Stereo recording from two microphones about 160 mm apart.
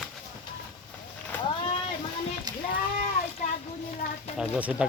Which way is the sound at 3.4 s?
50° left (ahead or behind).